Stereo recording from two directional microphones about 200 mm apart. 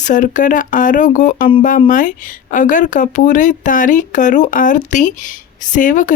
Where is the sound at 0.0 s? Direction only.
40° left (ahead or behind).